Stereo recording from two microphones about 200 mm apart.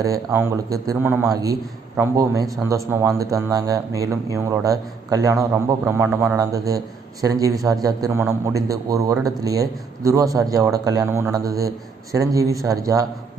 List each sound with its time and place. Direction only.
0.0 s speech: 15° right (ahead or behind)